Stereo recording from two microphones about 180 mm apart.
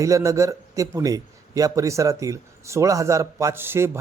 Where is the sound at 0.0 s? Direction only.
15° right (ahead or behind).